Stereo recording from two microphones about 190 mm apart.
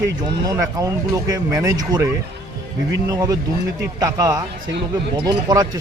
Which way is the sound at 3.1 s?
20° right (ahead or behind).